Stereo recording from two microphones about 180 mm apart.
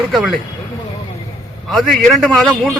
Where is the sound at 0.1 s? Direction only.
Centre (ahead or behind).